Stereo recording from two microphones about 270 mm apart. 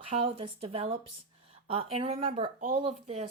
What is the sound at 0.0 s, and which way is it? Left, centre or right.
Speech, right.